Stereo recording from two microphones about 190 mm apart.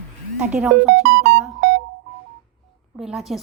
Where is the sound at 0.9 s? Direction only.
65° right (ahead or behind).